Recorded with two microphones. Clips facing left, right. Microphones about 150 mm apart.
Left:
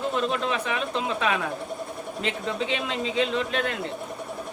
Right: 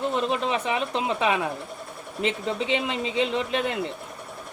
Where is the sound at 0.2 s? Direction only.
20° right (ahead or behind).